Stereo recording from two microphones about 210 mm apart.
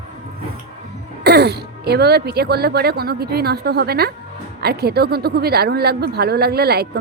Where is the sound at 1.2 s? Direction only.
50° right (ahead or behind).